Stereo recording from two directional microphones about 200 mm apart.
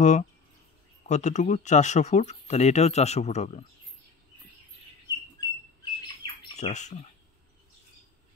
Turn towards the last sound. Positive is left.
turn(degrees=35)  # may be behind; listen again after turning